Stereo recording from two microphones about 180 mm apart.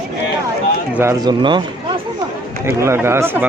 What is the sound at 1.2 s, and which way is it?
Speech, 25° right (ahead or behind).